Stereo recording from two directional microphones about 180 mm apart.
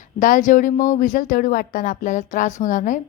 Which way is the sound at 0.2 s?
45° left (ahead or behind).